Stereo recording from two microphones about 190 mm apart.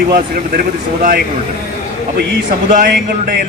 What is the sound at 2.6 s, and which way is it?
Speech, 45° right (ahead or behind).